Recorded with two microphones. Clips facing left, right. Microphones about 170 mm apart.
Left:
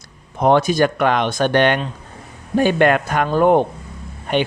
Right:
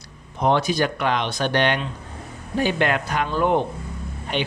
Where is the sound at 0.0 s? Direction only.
50° left (ahead or behind).